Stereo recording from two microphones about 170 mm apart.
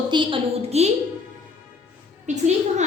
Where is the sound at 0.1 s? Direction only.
30° right (ahead or behind).